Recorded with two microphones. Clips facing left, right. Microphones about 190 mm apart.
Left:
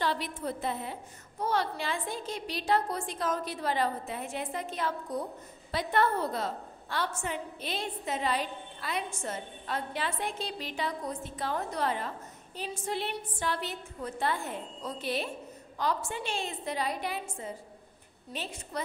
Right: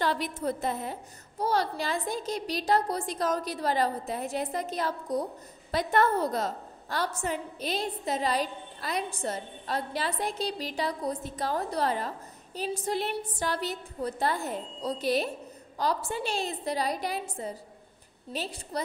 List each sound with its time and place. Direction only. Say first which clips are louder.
0.0 s a woman's voice: right 3 dB; 45° right (ahead or behind)